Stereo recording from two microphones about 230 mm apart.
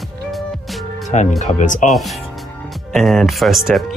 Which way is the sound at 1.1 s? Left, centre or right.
Left.